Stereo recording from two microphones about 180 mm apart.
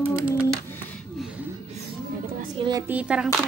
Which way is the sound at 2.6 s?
25° right (ahead or behind).